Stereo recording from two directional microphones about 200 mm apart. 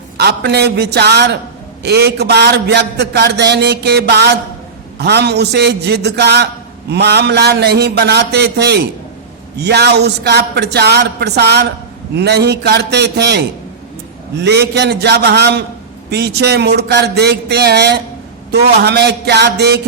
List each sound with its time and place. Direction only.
0.2 s a man's voice: 55° right (ahead or behind)